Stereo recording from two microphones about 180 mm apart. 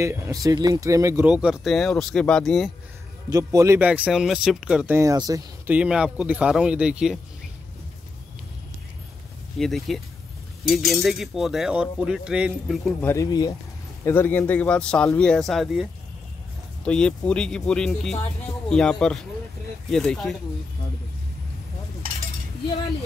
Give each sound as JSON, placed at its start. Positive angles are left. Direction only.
{"t": 0.0, "sound": "speech", "side_deg": -15}
{"t": 1.3, "sound": "speech", "side_deg": -5}
{"t": 3.3, "sound": "speech", "side_deg": -20}
{"t": 5.7, "sound": "speech", "side_deg": -5}
{"t": 9.6, "sound": "speech", "side_deg": 0}
{"t": 13.0, "sound": "speech", "side_deg": 15}